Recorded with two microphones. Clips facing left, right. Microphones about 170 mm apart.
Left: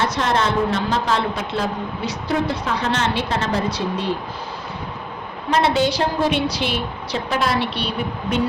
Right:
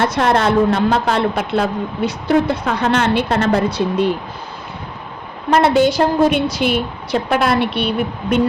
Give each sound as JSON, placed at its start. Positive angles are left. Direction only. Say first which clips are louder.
{"t": 0.0, "sound": "speech", "louder": "right 5 dB", "side_deg": -55}
{"t": 5.5, "sound": "a woman's voice", "louder": "right 5 dB", "side_deg": -55}